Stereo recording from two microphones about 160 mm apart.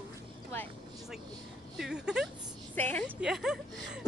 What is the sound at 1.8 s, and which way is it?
Speech, 5° right (ahead or behind).